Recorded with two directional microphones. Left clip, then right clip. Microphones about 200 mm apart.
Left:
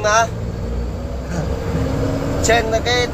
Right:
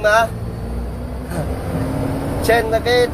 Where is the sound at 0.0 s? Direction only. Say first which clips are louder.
Right 1 dB; 20° right (ahead or behind).